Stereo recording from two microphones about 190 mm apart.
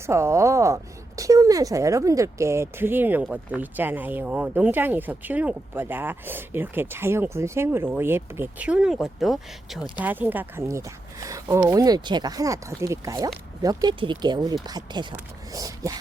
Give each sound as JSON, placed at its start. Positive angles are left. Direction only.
{"t": 0.0, "sound": "a woman's voice", "side_deg": -15}